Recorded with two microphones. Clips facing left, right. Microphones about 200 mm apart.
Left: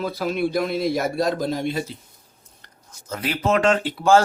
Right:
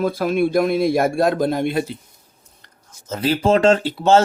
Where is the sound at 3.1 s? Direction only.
25° right (ahead or behind).